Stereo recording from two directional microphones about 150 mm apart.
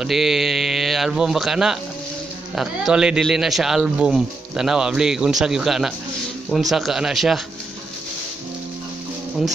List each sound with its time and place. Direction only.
0.0 s speech: centre (ahead or behind)